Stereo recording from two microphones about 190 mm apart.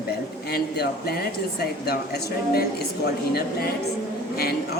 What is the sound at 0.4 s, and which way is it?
A woman's voice, 55° left (ahead or behind).